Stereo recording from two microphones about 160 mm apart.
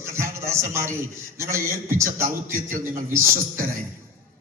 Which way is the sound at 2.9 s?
15° right (ahead or behind).